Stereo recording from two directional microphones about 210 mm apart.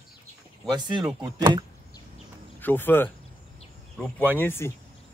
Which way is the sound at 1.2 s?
20° right (ahead or behind).